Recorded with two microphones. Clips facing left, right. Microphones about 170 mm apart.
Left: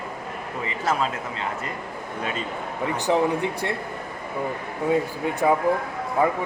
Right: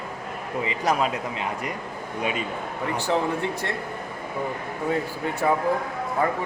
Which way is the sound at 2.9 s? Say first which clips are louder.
Left 3 dB; 15° left (ahead or behind).